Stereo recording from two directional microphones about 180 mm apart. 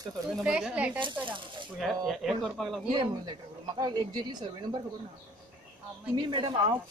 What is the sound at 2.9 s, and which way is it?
Speech, 25° right (ahead or behind).